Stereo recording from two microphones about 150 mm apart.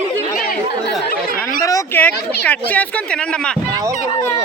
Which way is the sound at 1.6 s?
20° left (ahead or behind).